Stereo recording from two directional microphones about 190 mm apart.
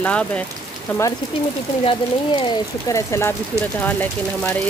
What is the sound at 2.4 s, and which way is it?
Speech, 15° left (ahead or behind).